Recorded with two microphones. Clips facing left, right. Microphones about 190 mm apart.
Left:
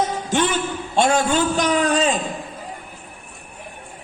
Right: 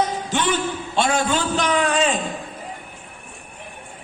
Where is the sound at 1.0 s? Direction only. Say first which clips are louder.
Left 3 dB; 45° left (ahead or behind).